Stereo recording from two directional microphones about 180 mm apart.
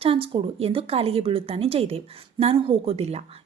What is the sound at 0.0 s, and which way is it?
A woman's voice, 30° right (ahead or behind).